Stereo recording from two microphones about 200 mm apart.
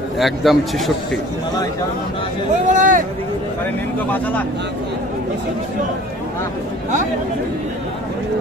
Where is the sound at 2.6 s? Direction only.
40° right (ahead or behind).